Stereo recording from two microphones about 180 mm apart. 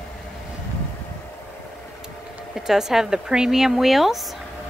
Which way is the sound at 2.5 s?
Centre (ahead or behind).